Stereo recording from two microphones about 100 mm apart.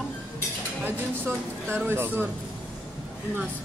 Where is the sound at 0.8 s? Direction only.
20° right (ahead or behind).